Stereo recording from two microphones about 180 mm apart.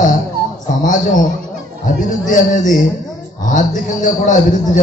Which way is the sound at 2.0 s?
45° left (ahead or behind).